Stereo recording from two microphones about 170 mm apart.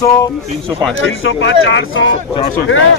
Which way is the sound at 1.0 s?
90° left.